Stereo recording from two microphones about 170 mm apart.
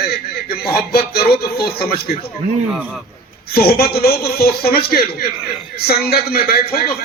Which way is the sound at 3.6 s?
65° left (ahead or behind).